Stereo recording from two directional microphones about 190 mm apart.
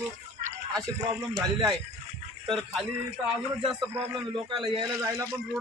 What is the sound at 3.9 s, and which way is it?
Speech, 30° right (ahead or behind).